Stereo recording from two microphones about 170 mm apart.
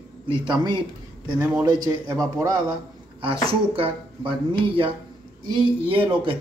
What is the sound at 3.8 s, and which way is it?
A man's voice, 30° right (ahead or behind).